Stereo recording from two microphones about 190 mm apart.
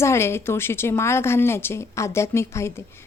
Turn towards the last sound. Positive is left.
turn(degrees=15)  # may be behind; listen again after turning